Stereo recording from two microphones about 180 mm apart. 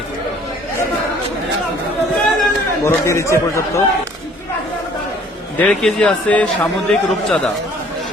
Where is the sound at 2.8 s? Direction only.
15° left (ahead or behind).